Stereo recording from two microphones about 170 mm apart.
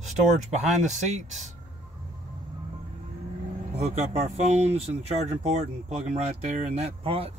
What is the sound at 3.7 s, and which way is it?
Speech, 40° right (ahead or behind).